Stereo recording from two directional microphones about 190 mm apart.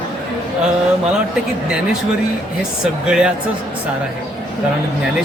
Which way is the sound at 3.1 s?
5° right (ahead or behind).